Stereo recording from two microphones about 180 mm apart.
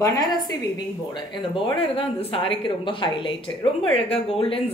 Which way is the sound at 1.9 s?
30° left (ahead or behind).